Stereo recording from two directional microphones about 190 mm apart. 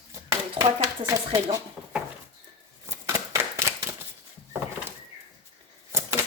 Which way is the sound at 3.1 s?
15° right (ahead or behind).